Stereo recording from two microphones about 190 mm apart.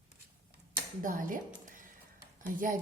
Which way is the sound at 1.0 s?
45° right (ahead or behind).